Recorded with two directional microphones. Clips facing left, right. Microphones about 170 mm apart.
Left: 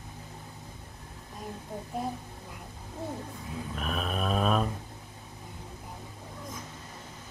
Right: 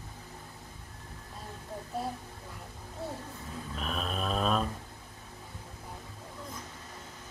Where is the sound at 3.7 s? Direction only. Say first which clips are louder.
Left 2 dB; 5° left (ahead or behind).